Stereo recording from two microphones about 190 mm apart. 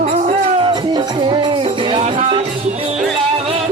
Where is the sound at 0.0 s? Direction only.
35° right (ahead or behind).